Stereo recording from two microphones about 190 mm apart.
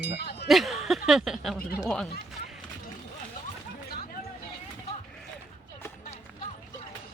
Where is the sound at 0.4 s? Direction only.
Centre (ahead or behind).